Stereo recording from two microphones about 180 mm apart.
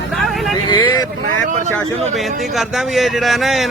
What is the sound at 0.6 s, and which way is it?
Speech, 25° left (ahead or behind).